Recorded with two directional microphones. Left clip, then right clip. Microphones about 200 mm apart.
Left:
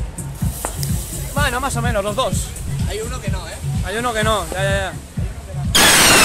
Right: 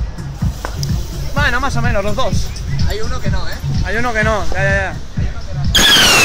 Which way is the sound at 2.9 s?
25° right (ahead or behind).